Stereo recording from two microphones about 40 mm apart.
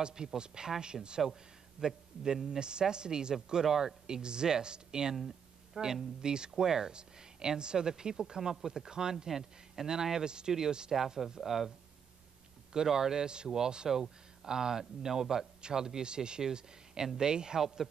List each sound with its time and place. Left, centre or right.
0.0 s a woman's voice: centre
12.7 s speech: centre